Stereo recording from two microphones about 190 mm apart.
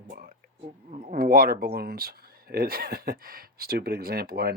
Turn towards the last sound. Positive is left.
turn(degrees=-55)  # may be behind; listen again after turning